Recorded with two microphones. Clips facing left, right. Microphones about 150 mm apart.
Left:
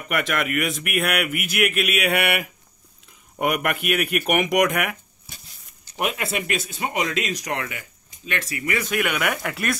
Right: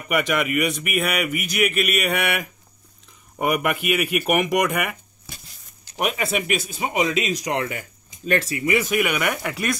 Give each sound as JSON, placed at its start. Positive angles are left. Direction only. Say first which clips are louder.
{"t": 0.1, "sound": "a man's voice", "louder": "right 2 dB", "side_deg": 0}
{"t": 5.9, "sound": "a man's voice", "louder": "right 2 dB", "side_deg": 0}
{"t": 7.5, "sound": "speech", "louder": "right 4 dB", "side_deg": -35}
{"t": 8.7, "sound": "a man's voice", "louder": "right 2 dB", "side_deg": -5}